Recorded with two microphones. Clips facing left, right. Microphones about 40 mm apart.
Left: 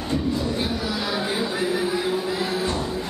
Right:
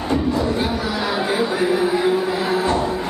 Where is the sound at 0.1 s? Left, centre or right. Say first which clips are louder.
Right 5 dB; right.